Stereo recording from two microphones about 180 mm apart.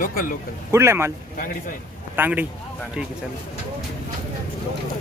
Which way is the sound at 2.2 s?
10° right (ahead or behind).